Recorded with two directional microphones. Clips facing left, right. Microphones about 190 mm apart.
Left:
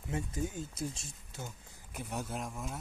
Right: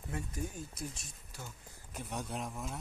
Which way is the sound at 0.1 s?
25° left (ahead or behind).